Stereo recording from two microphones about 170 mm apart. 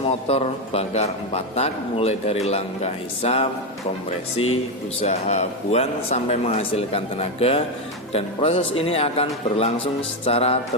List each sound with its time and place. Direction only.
0.0 s a man's voice: 35° left (ahead or behind)
4.9 s a man's voice: 40° left (ahead or behind)